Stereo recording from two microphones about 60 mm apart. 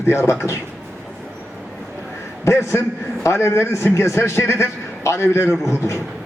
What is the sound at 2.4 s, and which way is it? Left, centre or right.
A man's voice, left.